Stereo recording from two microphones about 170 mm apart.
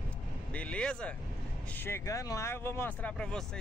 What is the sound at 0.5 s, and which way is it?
Speech, 5° left (ahead or behind).